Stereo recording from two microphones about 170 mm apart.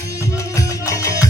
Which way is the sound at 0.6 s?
20° left (ahead or behind).